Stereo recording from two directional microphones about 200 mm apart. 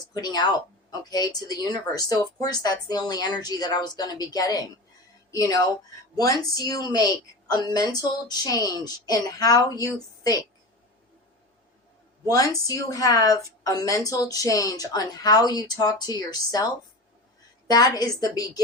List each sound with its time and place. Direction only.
0.1 s a woman's voice: 20° left (ahead or behind)
12.3 s a woman's voice: 15° left (ahead or behind)
17.7 s a woman's voice: 20° left (ahead or behind)